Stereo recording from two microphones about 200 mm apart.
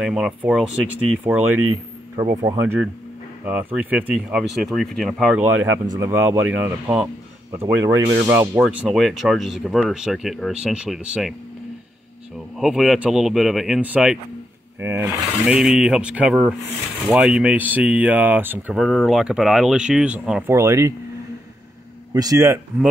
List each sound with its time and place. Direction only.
0.0 s speech: 5° right (ahead or behind)
2.1 s speech: 20° right (ahead or behind)
3.4 s speech: 5° right (ahead or behind)
5.4 s speech: 15° right (ahead or behind)
12.5 s speech: centre (ahead or behind)
22.1 s speech: 15° right (ahead or behind)